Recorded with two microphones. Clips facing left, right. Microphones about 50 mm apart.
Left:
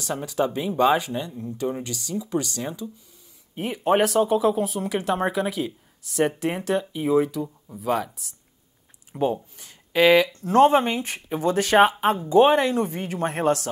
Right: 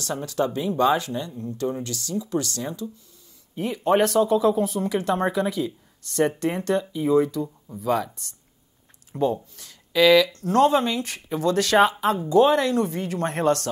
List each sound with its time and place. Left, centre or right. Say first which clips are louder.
0.2 s speech: even; centre
9.2 s speech: right 1 dB; left